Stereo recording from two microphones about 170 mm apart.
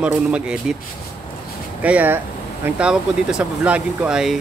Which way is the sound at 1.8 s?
10° right (ahead or behind).